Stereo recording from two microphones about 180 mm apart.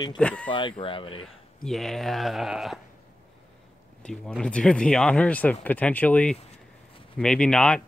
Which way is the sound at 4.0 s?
5° left (ahead or behind).